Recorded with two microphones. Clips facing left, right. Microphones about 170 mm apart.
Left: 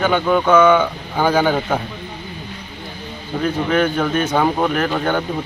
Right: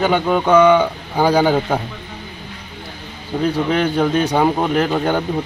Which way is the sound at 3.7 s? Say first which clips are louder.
Left 1 dB; 25° right (ahead or behind).